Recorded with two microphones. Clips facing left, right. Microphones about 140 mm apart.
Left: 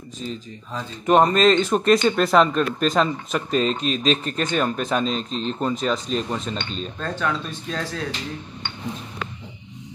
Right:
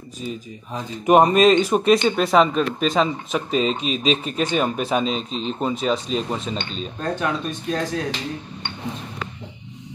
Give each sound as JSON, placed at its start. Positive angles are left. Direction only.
{"t": 0.2, "sound": "speech", "side_deg": -10}
{"t": 7.0, "sound": "speech", "side_deg": -15}